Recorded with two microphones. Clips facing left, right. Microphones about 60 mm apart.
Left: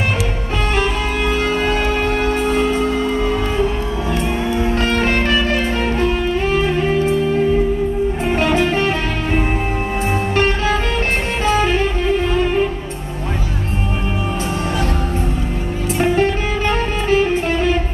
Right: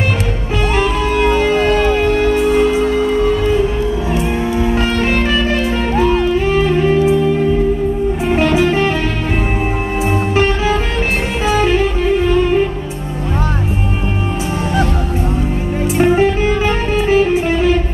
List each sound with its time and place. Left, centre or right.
0.7 s music: centre
1.7 s music: centre
2.3 s music: centre
4.6 s music: centre
8.3 s music: centre
10.3 s music: centre
16.0 s music: centre